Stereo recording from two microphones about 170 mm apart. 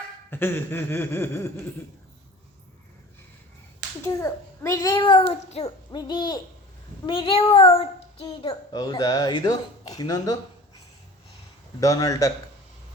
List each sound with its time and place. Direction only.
0.3 s speech: 10° left (ahead or behind)
4.0 s a child's voice: 20° left (ahead or behind)
5.3 s speech: 35° left (ahead or behind)
5.9 s a child's voice: 25° left (ahead or behind)
11.8 s a child's voice: 20° left (ahead or behind)